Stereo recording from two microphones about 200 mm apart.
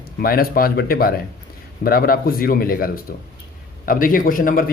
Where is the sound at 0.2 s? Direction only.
45° left (ahead or behind).